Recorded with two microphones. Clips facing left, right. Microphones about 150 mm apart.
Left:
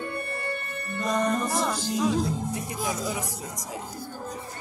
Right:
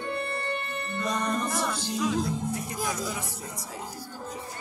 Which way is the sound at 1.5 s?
35° left (ahead or behind).